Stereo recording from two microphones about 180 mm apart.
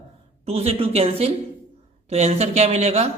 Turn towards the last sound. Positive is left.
turn(degrees=-35)  # may be behind; listen again after turning